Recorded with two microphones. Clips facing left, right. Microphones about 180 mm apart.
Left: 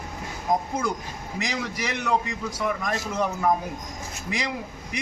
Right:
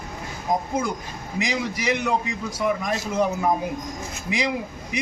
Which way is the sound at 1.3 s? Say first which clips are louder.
Right 4 dB; 5° right (ahead or behind).